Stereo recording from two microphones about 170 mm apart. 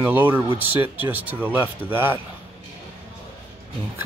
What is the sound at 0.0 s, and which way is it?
Speech, 10° right (ahead or behind).